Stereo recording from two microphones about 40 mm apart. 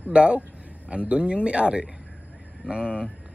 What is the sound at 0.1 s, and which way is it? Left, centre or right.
Speech, right.